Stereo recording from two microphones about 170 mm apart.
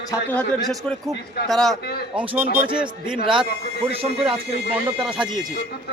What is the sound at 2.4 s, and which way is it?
Speech, 55° right (ahead or behind).